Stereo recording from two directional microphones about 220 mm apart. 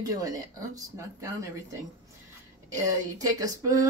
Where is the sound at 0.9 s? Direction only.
15° right (ahead or behind).